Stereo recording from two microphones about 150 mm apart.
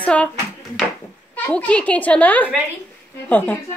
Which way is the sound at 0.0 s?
10° left (ahead or behind).